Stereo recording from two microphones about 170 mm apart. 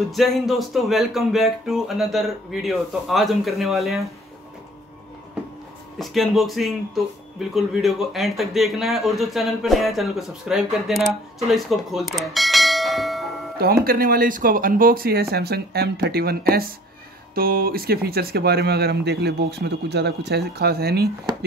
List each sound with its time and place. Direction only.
0.1 s speech: centre (ahead or behind)
5.9 s speech: centre (ahead or behind)
13.6 s speech: 60° right (ahead or behind)